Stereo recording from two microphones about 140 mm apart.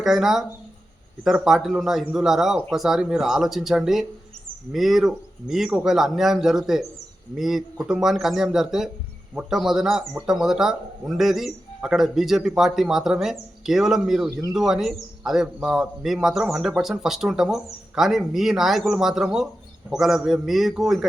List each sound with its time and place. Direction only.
0.0 s a man's voice: 5° right (ahead or behind)